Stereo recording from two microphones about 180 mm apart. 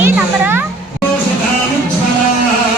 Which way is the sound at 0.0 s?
10° right (ahead or behind).